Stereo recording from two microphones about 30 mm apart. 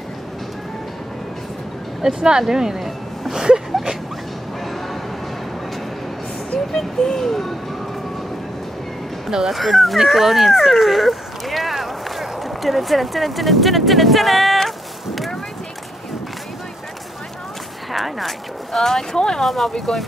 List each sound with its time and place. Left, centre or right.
2.1 s speech: right
3.3 s a sound: right
6.7 s speech: centre
9.3 s speech: centre
9.6 s speech: centre
17.9 s a sound: centre
18.8 s speech: centre
19.4 s speech: centre